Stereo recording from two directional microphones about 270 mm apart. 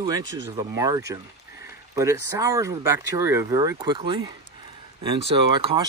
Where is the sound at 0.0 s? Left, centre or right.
Centre.